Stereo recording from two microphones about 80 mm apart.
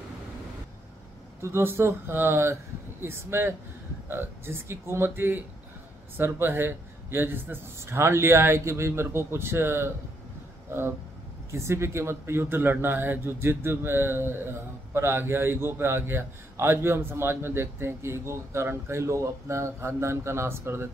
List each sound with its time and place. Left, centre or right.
1.4 s a man's voice: right